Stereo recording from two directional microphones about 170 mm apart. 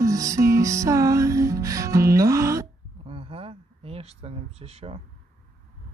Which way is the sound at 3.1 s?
35° right (ahead or behind).